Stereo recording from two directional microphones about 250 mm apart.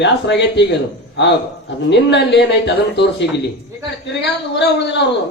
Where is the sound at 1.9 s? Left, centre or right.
Left.